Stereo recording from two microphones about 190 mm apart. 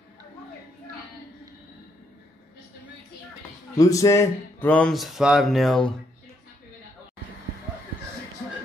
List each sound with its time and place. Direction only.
3.7 s speech: 15° left (ahead or behind)